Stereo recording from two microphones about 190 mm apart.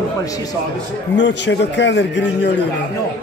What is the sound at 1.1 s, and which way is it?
A man's voice, 70° left (ahead or behind).